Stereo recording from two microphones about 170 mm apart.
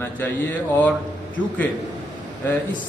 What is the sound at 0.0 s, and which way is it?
Speech, 10° left (ahead or behind).